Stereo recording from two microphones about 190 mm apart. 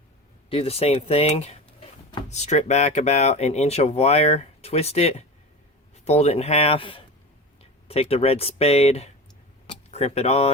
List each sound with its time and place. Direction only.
0.5 s speech: 30° left (ahead or behind)